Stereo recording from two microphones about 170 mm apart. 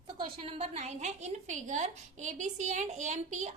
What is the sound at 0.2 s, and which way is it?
A woman's voice, 30° right (ahead or behind).